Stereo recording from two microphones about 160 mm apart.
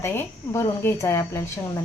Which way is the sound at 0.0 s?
15° left (ahead or behind).